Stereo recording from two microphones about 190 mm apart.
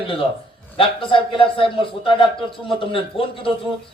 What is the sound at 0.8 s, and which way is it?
A man's voice, 25° left (ahead or behind).